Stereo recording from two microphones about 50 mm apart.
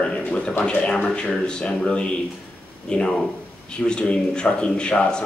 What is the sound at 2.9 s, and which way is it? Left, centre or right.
Speech, centre.